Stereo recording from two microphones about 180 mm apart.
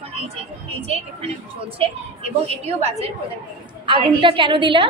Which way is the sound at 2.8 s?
35° right (ahead or behind).